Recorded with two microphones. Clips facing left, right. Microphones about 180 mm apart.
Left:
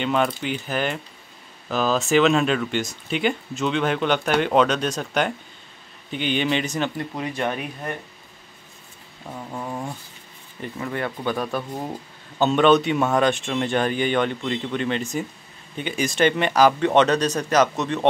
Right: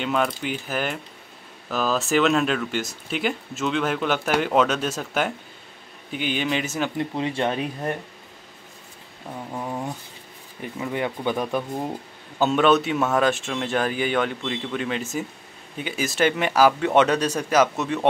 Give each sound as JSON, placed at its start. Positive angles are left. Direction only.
{"t": 0.0, "sound": "speech", "side_deg": 0}
{"t": 7.0, "sound": "speech", "side_deg": -25}
{"t": 9.5, "sound": "a sound", "side_deg": -10}
{"t": 10.6, "sound": "speech", "side_deg": -10}
{"t": 11.8, "sound": "speech", "side_deg": -5}